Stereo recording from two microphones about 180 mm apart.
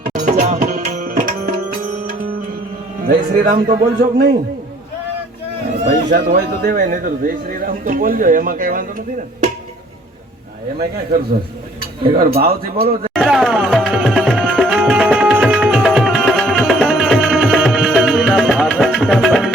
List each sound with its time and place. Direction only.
0.1 s tabla: 50° right (ahead or behind)
3.1 s a man's voice: 55° right (ahead or behind)
6.1 s a man's voice: 50° right (ahead or behind)
12.2 s speech: 60° right (ahead or behind)
13.1 s music: 5° right (ahead or behind)